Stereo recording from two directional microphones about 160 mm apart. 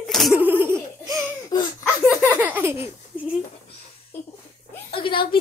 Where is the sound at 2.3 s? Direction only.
10° right (ahead or behind).